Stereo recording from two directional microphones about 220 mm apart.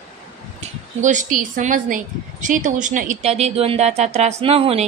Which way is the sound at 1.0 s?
35° right (ahead or behind).